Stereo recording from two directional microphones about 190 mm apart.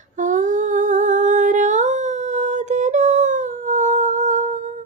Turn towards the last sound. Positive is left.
turn(degrees=-40)  # may be behind; listen again after turning